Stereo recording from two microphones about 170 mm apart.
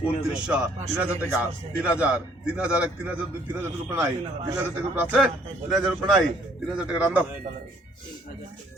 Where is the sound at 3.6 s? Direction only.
15° right (ahead or behind).